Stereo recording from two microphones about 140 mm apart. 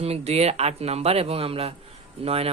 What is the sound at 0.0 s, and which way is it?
Speech, 45° right (ahead or behind).